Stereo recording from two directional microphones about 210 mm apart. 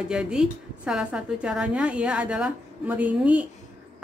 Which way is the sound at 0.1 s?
5° right (ahead or behind).